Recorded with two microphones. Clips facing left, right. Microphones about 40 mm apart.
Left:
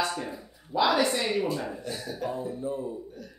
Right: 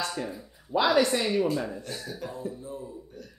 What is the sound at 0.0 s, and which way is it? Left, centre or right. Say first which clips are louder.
Speech: left 2 dB; centre.